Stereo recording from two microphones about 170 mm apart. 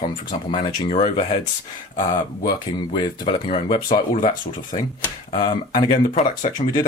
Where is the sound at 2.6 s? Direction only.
25° left (ahead or behind).